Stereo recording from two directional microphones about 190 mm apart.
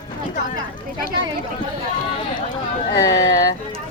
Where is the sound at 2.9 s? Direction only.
20° left (ahead or behind).